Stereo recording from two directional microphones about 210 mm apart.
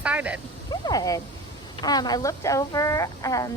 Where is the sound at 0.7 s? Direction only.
20° left (ahead or behind).